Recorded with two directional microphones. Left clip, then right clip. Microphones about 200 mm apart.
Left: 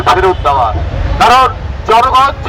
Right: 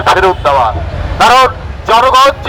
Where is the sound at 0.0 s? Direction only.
40° right (ahead or behind).